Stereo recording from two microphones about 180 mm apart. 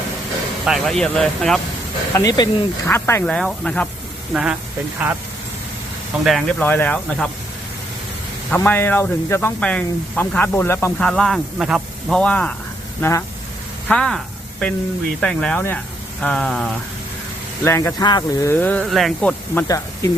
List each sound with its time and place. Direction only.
0.6 s speech: centre (ahead or behind)
2.1 s speech: 20° left (ahead or behind)
4.3 s speech: 5° right (ahead or behind)
6.2 s speech: 5° left (ahead or behind)
8.4 s speech: 10° left (ahead or behind)
15.2 s speech: 5° left (ahead or behind)
17.6 s speech: 15° left (ahead or behind)
18.5 s speech: 10° left (ahead or behind)
19.6 s speech: 20° left (ahead or behind)